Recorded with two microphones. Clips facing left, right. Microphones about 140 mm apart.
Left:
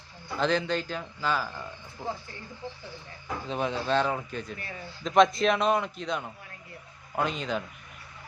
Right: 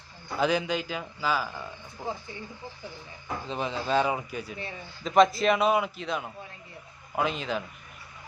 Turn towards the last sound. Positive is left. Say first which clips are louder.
# right 1 dB
turn(degrees=0)  # may be behind; listen again after turning